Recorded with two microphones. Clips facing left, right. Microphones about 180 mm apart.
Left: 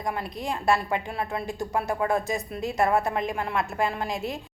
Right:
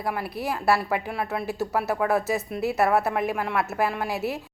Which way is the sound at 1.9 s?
70° right (ahead or behind).